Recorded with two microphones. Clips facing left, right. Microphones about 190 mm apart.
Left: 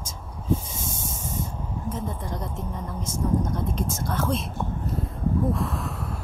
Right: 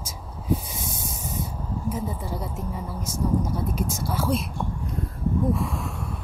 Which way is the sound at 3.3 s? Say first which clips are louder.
Even; 10° right (ahead or behind).